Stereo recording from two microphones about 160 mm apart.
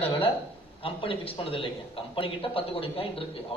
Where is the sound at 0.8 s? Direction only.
35° left (ahead or behind).